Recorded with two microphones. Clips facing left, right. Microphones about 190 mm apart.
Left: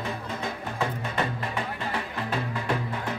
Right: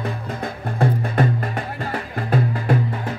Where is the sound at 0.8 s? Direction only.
50° right (ahead or behind).